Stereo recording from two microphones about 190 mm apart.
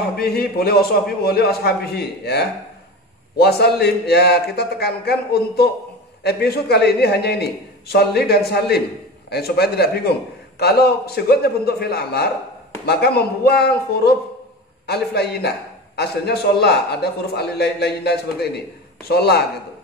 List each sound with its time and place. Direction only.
0.2 s a man's voice: 55° left (ahead or behind)